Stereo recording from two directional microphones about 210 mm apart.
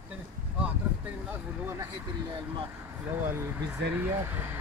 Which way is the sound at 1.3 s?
10° right (ahead or behind).